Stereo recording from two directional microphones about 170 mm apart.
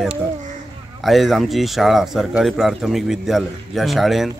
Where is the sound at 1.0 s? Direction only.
Centre (ahead or behind).